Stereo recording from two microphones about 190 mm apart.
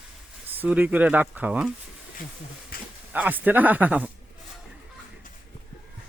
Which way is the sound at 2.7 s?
50° left (ahead or behind).